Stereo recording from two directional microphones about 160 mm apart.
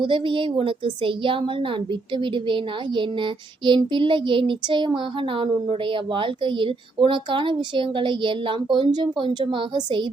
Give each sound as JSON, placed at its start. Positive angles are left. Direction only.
{"t": 0.0, "sound": "speech", "side_deg": -30}